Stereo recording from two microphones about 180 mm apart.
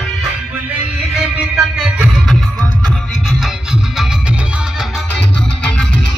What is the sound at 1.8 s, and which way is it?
Music, centre (ahead or behind).